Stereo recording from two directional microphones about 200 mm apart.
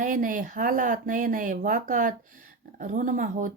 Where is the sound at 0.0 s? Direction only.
40° right (ahead or behind).